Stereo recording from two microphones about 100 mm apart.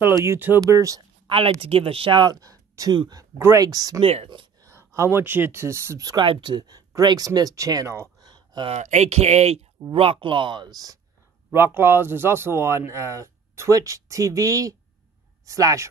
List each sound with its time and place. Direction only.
0.1 s speech: 25° right (ahead or behind)
0.6 s speech: 35° right (ahead or behind)
1.2 s speech: 65° right (ahead or behind); by 4.0 s 40° right (ahead or behind)
4.0 s speech: 85° right
4.6 s speech: 30° right (ahead or behind)
6.2 s speech: 55° right (ahead or behind); by 8.1 s 30° right (ahead or behind)
8.2 s a sound: 45° right (ahead or behind)
8.6 s speech: 90° right
9.9 s speech: 70° right (ahead or behind); by 11.0 s 40° right (ahead or behind)
11.5 s speech: 20° right (ahead or behind)